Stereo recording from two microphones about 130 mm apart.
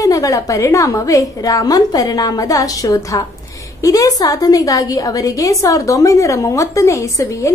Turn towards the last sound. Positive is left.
turn(degrees=25)  # may be behind; listen again after turning